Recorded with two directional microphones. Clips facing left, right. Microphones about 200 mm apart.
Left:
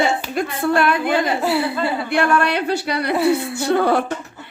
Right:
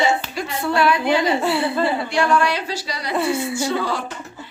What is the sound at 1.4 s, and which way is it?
Speech, centre (ahead or behind).